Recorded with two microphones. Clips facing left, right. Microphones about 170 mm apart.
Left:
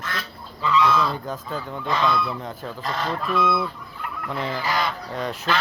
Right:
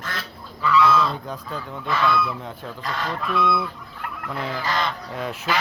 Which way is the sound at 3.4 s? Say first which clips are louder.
Even; 25° left (ahead or behind).